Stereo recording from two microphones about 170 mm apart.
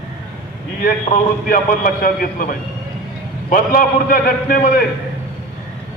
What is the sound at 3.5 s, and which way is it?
A man's voice, 55° left (ahead or behind).